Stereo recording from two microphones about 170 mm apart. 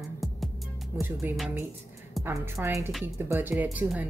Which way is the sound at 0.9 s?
15° right (ahead or behind).